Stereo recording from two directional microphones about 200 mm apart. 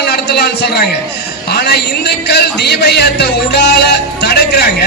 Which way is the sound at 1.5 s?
55° left (ahead or behind).